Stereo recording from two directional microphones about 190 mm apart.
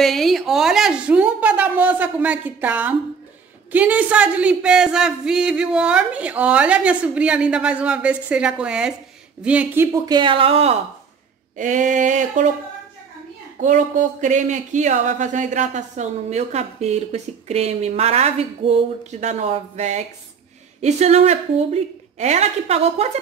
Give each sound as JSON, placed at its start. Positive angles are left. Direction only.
{"t": 0.0, "sound": "speech", "side_deg": 0}
{"t": 10.0, "sound": "speech", "side_deg": -25}
{"t": 13.6, "sound": "speech", "side_deg": -40}